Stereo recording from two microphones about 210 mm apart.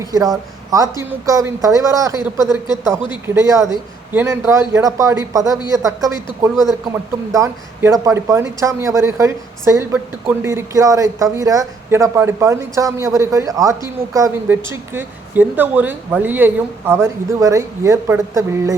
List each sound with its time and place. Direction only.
0.0 s speech: 15° right (ahead or behind)
7.3 s speech: 15° right (ahead or behind)